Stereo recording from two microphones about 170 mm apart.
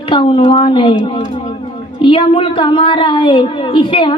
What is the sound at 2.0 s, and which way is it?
A woman's voice, 30° left (ahead or behind).